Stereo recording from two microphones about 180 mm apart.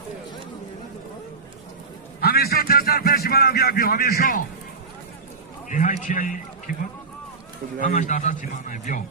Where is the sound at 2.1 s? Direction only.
60° left (ahead or behind).